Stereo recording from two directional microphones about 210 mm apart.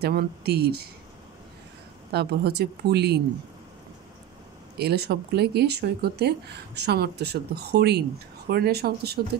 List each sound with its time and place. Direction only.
0.0 s speech: 50° right (ahead or behind)
2.1 s speech: 50° right (ahead or behind)
4.7 s speech: 50° right (ahead or behind)